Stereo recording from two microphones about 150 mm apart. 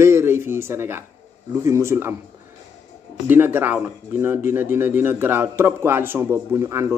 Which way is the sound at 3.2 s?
15° right (ahead or behind).